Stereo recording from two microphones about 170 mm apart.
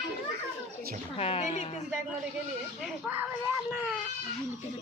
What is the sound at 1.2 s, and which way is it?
Speech, 40° left (ahead or behind).